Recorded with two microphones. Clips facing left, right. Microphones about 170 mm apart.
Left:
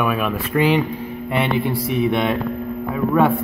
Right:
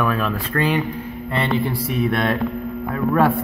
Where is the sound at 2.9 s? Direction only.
Centre (ahead or behind).